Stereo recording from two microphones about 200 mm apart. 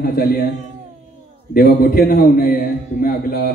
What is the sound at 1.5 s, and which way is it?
Speech, 50° left (ahead or behind).